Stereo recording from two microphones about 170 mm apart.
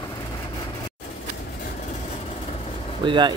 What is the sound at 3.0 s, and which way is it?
Speech, 30° right (ahead or behind).